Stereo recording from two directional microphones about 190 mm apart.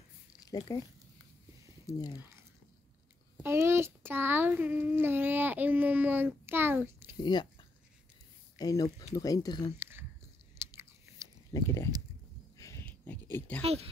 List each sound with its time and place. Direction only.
0.5 s speech: 20° left (ahead or behind)
1.9 s speech: 20° left (ahead or behind)
3.3 s a child's voice: 15° right (ahead or behind)
7.2 s speech: 20° left (ahead or behind)
9.8 s biting: 10° right (ahead or behind)
11.5 s a sound: 15° left (ahead or behind)
13.6 s speech: 35° right (ahead or behind)